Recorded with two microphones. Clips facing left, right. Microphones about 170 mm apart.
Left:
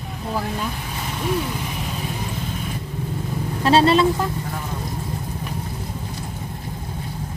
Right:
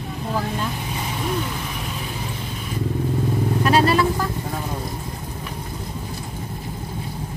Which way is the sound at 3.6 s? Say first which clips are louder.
Left 3 dB; 25° left (ahead or behind).